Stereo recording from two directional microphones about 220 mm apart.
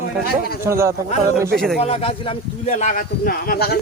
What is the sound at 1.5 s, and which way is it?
Speech, centre (ahead or behind).